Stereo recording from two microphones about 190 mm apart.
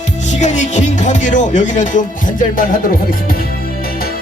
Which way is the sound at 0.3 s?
40° left (ahead or behind).